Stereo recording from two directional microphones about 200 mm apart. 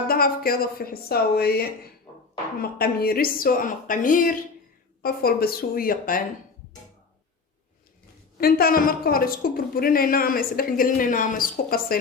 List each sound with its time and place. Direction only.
0.1 s a woman's voice: 50° left (ahead or behind)
8.4 s a woman's voice: 50° left (ahead or behind)